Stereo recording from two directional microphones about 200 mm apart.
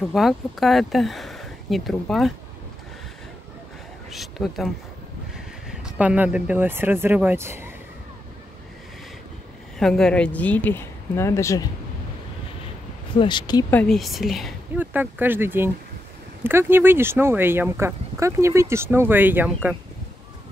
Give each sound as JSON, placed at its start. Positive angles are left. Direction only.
{"t": 0.1, "sound": "speech", "side_deg": 0}
{"t": 4.1, "sound": "speech", "side_deg": 0}
{"t": 5.7, "sound": "speech", "side_deg": -5}
{"t": 9.8, "sound": "speech", "side_deg": 5}
{"t": 13.1, "sound": "speech", "side_deg": 25}
{"t": 13.7, "sound": "speech", "side_deg": 5}